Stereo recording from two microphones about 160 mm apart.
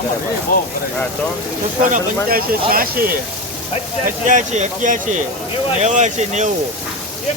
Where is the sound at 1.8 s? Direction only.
60° right (ahead or behind).